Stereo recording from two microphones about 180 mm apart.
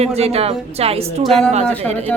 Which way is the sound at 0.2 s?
35° right (ahead or behind).